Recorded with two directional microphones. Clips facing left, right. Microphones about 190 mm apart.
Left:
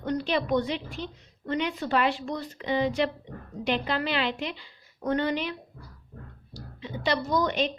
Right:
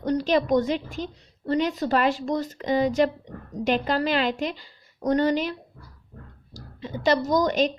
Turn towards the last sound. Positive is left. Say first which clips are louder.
# right 4 dB
turn(degrees=-40)  # may be behind; listen again after turning